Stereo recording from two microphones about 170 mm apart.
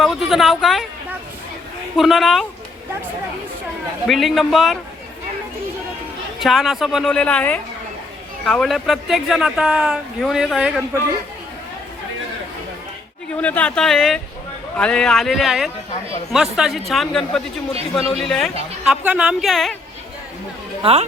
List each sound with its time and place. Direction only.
0.0 s speech: centre (ahead or behind)
2.0 s speech: centre (ahead or behind)
4.0 s speech: centre (ahead or behind)
6.4 s speech: centre (ahead or behind)
13.3 s speech: 10° left (ahead or behind)
20.8 s speech: 30° right (ahead or behind)